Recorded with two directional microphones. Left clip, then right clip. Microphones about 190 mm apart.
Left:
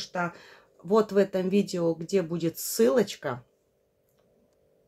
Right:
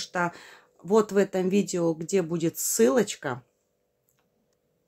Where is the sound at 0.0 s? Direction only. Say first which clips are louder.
Right 3 dB; 30° right (ahead or behind).